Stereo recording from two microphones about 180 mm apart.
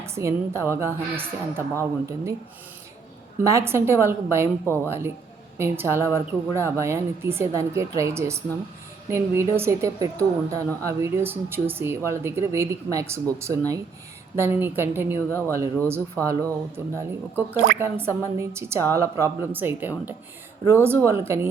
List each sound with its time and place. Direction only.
0.0 s a woman's voice: 15° right (ahead or behind)
3.4 s a woman's voice: 15° right (ahead or behind)